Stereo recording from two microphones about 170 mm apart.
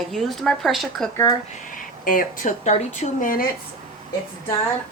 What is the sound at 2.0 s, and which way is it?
Speech, 50° left (ahead or behind).